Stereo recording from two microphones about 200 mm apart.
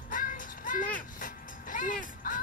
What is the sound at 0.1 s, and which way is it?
Music, 40° left (ahead or behind).